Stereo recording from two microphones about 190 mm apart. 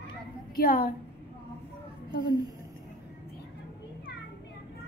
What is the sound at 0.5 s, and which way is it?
Speech, 50° left (ahead or behind).